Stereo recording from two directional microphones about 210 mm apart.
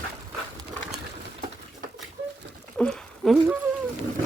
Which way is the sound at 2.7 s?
5° left (ahead or behind).